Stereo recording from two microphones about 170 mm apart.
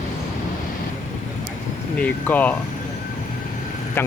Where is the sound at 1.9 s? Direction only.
10° left (ahead or behind).